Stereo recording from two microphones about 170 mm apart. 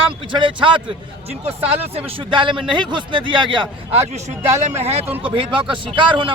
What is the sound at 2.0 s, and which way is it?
Speech, 35° right (ahead or behind).